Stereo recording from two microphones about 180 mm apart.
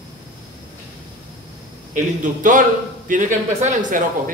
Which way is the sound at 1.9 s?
45° right (ahead or behind).